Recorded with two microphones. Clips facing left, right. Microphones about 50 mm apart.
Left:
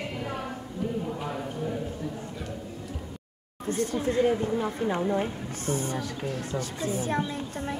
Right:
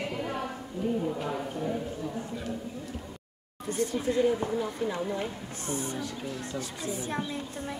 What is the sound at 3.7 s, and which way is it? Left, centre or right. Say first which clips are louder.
Speech: left 2 dB; left.